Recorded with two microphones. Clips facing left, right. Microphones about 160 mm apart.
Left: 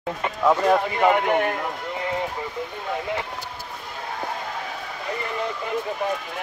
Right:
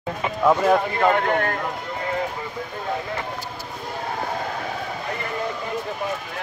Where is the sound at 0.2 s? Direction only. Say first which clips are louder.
Right 1 dB; centre (ahead or behind); by 1.5 s 15° left (ahead or behind).